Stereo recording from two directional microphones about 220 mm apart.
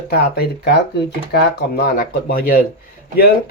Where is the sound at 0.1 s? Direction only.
45° left (ahead or behind).